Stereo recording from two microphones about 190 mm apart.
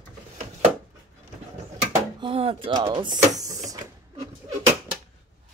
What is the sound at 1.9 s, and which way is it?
Speech, 25° right (ahead or behind).